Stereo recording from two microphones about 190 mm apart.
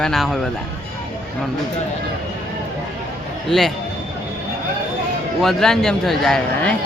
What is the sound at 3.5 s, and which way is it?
Speech, centre (ahead or behind).